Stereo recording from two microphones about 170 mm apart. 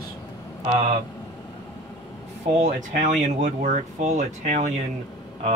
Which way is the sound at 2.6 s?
45° right (ahead or behind).